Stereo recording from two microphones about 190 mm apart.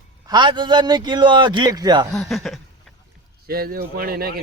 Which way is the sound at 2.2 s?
Centre (ahead or behind).